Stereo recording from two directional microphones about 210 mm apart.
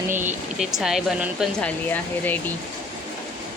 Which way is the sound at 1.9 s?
10° left (ahead or behind).